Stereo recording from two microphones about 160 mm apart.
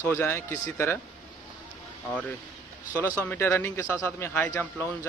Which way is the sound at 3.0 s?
10° left (ahead or behind).